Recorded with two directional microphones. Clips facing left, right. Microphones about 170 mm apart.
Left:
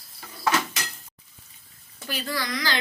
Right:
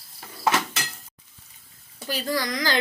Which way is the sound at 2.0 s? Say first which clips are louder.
Right 4 dB; 40° right (ahead or behind).